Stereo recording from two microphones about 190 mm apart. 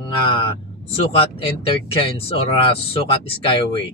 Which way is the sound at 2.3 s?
30° left (ahead or behind).